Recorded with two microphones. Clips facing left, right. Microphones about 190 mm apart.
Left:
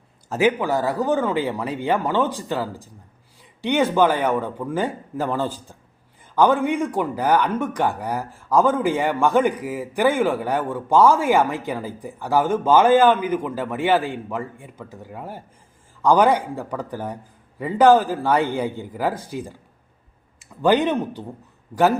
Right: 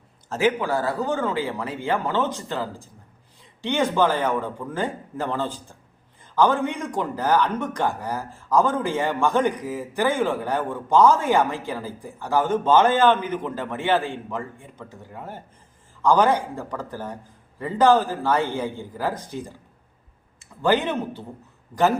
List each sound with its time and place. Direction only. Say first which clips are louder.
0.3 s speech: left 2 dB; 15° left (ahead or behind)
20.6 s speech: left 3 dB; 15° left (ahead or behind)